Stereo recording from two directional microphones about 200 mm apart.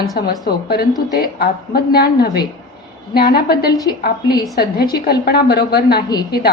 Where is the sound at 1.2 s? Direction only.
50° left (ahead or behind).